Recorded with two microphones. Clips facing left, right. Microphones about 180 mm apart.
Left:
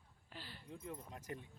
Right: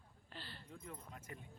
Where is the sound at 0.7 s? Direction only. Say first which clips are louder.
Left 5 dB; 20° left (ahead or behind).